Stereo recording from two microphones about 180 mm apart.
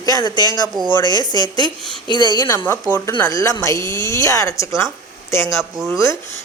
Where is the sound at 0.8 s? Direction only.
20° right (ahead or behind).